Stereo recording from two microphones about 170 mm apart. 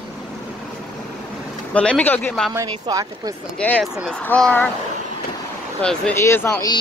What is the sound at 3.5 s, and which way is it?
Speech, 5° left (ahead or behind).